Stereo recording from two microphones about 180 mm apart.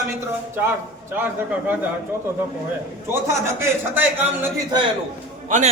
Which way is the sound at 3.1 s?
15° right (ahead or behind).